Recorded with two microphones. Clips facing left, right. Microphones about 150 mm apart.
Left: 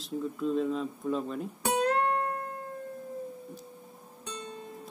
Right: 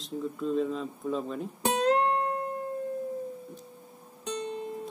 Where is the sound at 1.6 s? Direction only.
20° right (ahead or behind).